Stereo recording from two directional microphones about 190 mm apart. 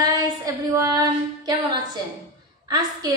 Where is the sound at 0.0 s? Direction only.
20° right (ahead or behind).